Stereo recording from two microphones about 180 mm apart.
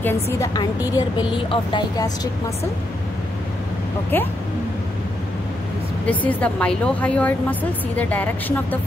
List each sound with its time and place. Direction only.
0.0 s a woman's voice: 15° left (ahead or behind)
0.9 s a woman's voice: 25° left (ahead or behind)
4.1 s a woman's voice: 10° left (ahead or behind)
6.0 s a woman's voice: 10° left (ahead or behind)